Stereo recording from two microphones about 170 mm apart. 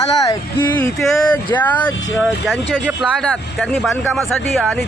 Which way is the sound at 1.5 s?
10° left (ahead or behind).